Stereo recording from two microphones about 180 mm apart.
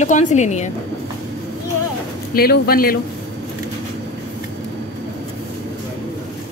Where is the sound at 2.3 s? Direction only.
55° left (ahead or behind).